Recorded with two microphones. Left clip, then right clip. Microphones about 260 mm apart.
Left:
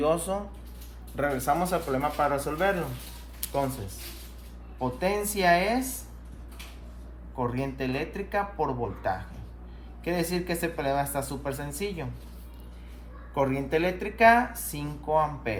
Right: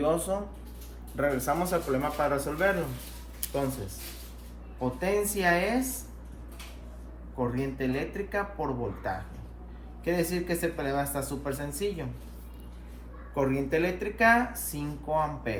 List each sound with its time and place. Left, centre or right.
0.0 s speech: left
3.4 s a sound: left
4.8 s speech: left
7.3 s speech: left
10.3 s speech: left
13.3 s speech: left